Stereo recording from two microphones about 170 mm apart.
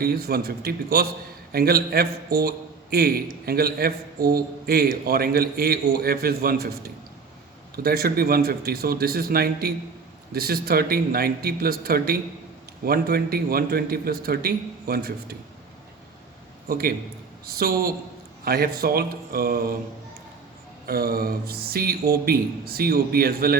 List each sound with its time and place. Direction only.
0.0 s a man's voice: 65° right (ahead or behind)
16.6 s a man's voice: 60° right (ahead or behind)
20.8 s a man's voice: 60° right (ahead or behind)